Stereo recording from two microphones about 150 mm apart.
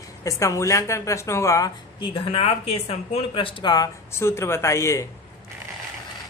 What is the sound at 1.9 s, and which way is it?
Speech, 35° left (ahead or behind).